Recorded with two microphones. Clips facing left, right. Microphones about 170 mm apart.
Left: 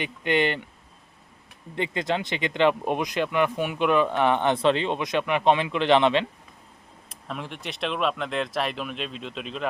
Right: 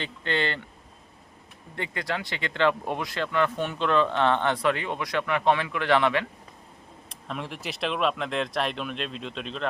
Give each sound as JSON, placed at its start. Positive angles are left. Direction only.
{"t": 0.0, "sound": "speech", "side_deg": 15}
{"t": 1.7, "sound": "speech", "side_deg": 20}
{"t": 7.1, "sound": "speech", "side_deg": 0}